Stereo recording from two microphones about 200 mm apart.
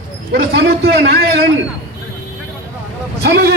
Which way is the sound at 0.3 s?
55° right (ahead or behind).